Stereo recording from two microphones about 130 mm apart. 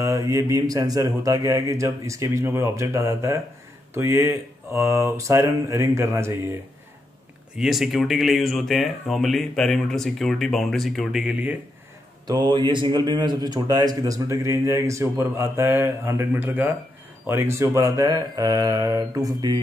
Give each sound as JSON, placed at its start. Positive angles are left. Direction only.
{"t": 0.0, "sound": "speech", "side_deg": -25}
{"t": 7.5, "sound": "speech", "side_deg": -5}
{"t": 12.3, "sound": "speech", "side_deg": -35}